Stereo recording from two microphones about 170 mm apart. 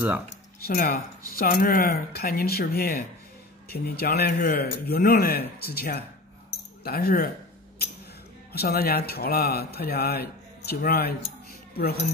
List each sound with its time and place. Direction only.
0.6 s speech: 60° left (ahead or behind)
8.5 s speech: 65° left (ahead or behind)